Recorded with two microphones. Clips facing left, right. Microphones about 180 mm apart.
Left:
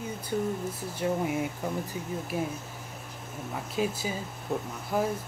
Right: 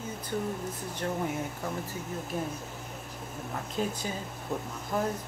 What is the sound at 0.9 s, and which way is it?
Speech, 10° left (ahead or behind).